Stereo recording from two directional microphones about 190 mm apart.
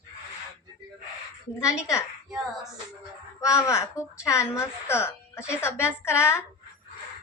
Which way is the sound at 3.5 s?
15° left (ahead or behind).